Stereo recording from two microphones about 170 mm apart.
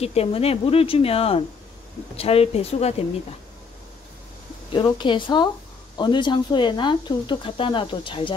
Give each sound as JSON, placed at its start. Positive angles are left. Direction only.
{"t": 0.0, "sound": "speech", "side_deg": 35}
{"t": 4.7, "sound": "speech", "side_deg": 30}